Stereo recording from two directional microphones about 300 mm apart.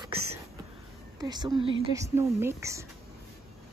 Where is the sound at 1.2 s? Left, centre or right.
Centre.